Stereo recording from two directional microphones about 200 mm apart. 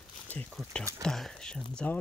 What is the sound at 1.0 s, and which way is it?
Whispering, centre (ahead or behind).